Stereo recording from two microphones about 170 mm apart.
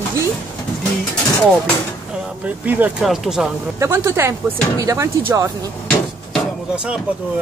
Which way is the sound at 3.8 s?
15° right (ahead or behind).